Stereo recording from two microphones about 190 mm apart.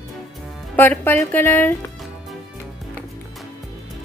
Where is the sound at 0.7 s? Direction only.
10° left (ahead or behind).